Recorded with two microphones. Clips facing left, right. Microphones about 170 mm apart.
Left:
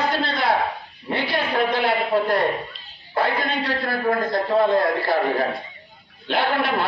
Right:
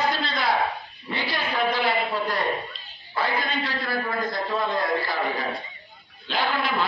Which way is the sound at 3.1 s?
55° left (ahead or behind).